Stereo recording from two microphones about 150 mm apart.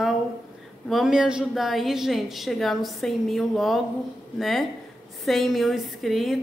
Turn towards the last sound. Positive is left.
turn(degrees=0)  # may be behind; listen again after turning